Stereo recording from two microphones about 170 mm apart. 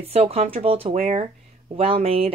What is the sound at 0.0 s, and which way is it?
Speech, 35° right (ahead or behind).